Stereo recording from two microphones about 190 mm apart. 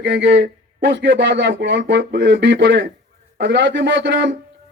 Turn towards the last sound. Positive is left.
turn(degrees=-65)  # may be behind; listen again after turning